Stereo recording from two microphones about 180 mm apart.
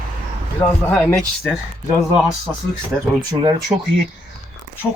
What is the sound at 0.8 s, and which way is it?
Speech, 5° left (ahead or behind).